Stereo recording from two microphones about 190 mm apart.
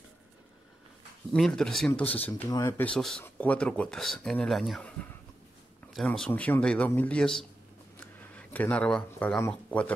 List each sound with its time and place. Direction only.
1.3 s speech: 5° left (ahead or behind)
2.9 s speech: 5° left (ahead or behind)
5.9 s speech: 5° left (ahead or behind)
8.0 s a sound: 10° left (ahead or behind)
9.4 s speech: 5° left (ahead or behind)